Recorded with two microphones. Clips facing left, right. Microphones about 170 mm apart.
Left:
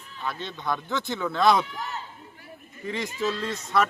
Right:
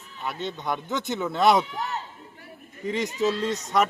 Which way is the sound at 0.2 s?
20° right (ahead or behind).